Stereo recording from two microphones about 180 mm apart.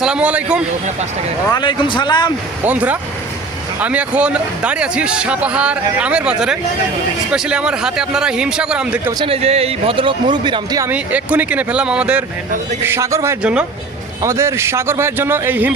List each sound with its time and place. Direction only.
0.0 s a man's voice: 5° right (ahead or behind)
1.5 s speech: 25° left (ahead or behind)
2.6 s a man's voice: 10° right (ahead or behind)
9.1 s speech: 30° right (ahead or behind)
10.9 s a man's voice: 10° right (ahead or behind)
13.4 s a man's voice: 5° right (ahead or behind)